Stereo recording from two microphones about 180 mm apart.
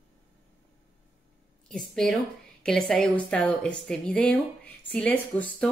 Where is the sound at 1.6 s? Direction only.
Centre (ahead or behind).